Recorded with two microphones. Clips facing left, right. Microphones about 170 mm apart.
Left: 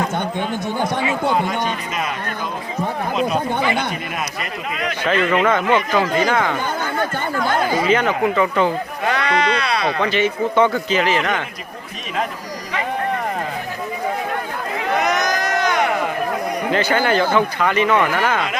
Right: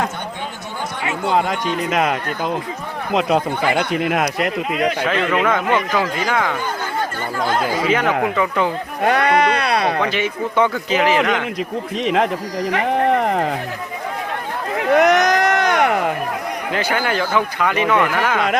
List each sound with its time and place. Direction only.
1.0 s a man's voice: 80° right
3.2 s a man's voice: 90° right
5.0 s speech: centre (ahead or behind)
7.9 s speech: 5° right (ahead or behind)
9.0 s speech: 50° right (ahead or behind)
10.0 s speech: 10° right (ahead or behind)
12.0 s speech: 90° right
12.7 s a sound: 70° right (ahead or behind)
14.9 s a sound: 70° right (ahead or behind)
16.7 s speech: 5° right (ahead or behind)